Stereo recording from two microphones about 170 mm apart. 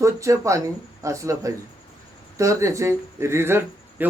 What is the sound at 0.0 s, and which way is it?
Speech, 20° right (ahead or behind).